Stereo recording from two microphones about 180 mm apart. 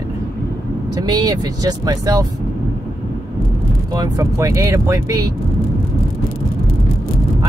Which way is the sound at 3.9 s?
20° right (ahead or behind).